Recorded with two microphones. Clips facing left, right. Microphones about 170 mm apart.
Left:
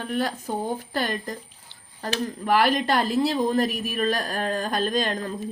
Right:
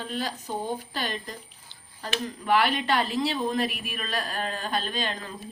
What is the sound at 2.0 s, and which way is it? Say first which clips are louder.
Speech: left 3 dB; 45° left (ahead or behind).